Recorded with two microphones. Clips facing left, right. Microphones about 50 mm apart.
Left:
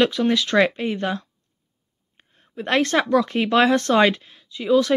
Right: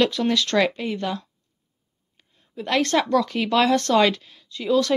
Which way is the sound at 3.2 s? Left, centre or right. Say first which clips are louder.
Left 2 dB; left.